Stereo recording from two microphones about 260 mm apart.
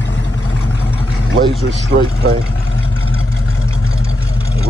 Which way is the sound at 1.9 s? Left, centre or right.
Right.